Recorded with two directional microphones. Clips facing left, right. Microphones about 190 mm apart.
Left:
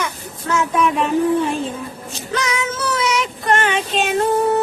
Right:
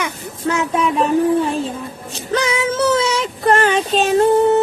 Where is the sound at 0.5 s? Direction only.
25° right (ahead or behind).